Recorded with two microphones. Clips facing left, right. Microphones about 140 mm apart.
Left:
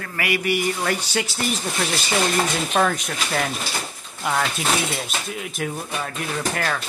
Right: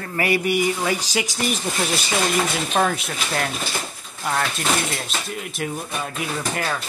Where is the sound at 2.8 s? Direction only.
5° right (ahead or behind).